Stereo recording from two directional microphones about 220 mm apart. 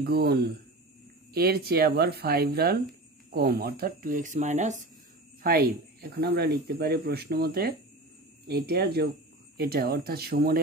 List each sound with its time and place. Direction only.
0.0 s speech: 45° right (ahead or behind)
5.4 s speech: 45° right (ahead or behind)